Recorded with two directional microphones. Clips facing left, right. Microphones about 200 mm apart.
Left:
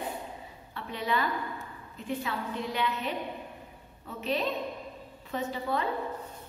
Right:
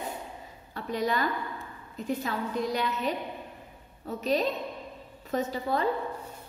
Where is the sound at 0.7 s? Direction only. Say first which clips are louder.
Right 3 dB; 40° right (ahead or behind).